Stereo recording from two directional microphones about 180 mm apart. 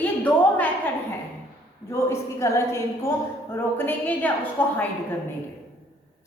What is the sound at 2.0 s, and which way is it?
A woman's voice, 15° left (ahead or behind).